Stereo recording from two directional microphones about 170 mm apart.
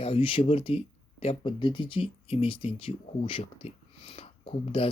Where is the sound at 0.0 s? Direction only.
30° left (ahead or behind).